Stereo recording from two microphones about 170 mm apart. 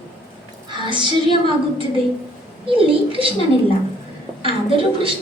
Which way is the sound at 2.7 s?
30° right (ahead or behind).